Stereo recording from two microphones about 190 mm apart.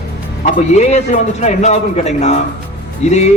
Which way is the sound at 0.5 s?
35° left (ahead or behind).